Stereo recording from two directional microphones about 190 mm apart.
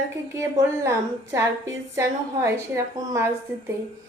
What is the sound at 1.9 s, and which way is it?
Speech, 15° right (ahead or behind).